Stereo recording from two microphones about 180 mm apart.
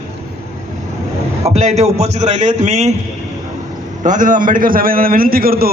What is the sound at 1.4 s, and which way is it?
A man's voice, 35° right (ahead or behind).